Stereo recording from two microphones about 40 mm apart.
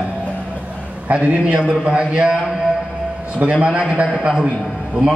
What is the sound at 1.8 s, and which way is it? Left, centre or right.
Speech, right.